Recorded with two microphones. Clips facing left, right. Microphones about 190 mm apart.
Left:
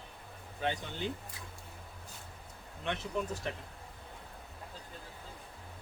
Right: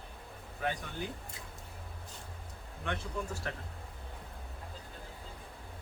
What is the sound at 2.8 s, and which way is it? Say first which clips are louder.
Speech: left 2 dB; 20° left (ahead or behind).